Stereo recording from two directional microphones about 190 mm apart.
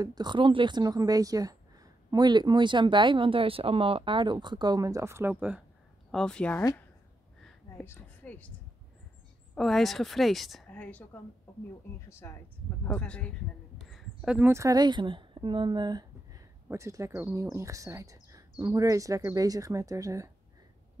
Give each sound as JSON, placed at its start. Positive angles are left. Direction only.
{"t": 0.0, "sound": "speech", "side_deg": -20}
{"t": 6.1, "sound": "a woman's voice", "side_deg": 5}
{"t": 7.4, "sound": "a sound", "side_deg": 10}
{"t": 9.6, "sound": "a woman's voice", "side_deg": 0}
{"t": 12.1, "sound": "a woman's voice", "side_deg": 15}